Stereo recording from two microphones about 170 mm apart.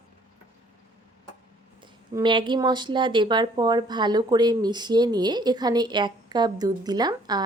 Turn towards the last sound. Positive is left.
turn(degrees=-25)  # may be behind; listen again after turning